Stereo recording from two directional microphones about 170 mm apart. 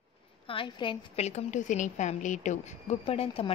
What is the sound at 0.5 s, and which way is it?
A woman's voice, 30° left (ahead or behind).